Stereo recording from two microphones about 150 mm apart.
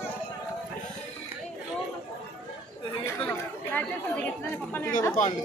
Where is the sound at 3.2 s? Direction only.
10° left (ahead or behind).